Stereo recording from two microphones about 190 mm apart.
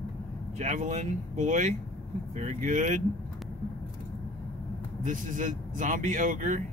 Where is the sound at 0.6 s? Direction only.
40° right (ahead or behind).